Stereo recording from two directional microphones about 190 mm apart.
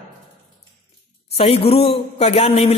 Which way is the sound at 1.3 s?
30° left (ahead or behind).